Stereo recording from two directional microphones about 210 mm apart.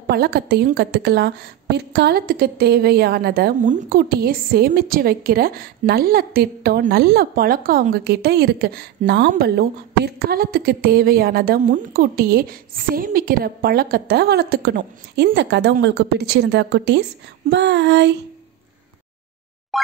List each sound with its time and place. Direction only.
0.1 s a woman's voice: 50° right (ahead or behind)
17.5 s a sound: 55° right (ahead or behind)
19.7 s plop: centre (ahead or behind)